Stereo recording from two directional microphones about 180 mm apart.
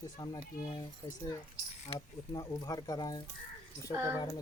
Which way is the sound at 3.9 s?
15° right (ahead or behind).